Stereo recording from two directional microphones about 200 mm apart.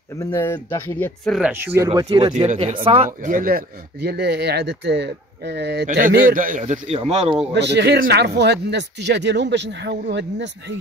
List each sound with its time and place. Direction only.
0.2 s speech: 15° left (ahead or behind)
1.5 s speech: 10° right (ahead or behind)
1.9 s speech: 25° right (ahead or behind)
2.3 s a man's voice: 35° right (ahead or behind)
3.1 s speech: 40° right (ahead or behind)
5.9 s a man's voice: 45° right (ahead or behind)
7.5 s speech: 60° right (ahead or behind)